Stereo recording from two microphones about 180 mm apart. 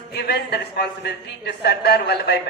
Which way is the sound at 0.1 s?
65° left (ahead or behind).